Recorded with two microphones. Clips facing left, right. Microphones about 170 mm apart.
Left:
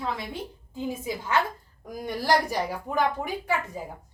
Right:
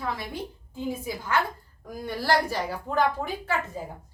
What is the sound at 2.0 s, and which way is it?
A woman's voice, 15° left (ahead or behind).